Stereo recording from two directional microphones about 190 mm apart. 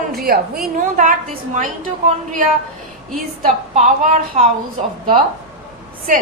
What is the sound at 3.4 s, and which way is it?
A woman's voice, 40° right (ahead or behind).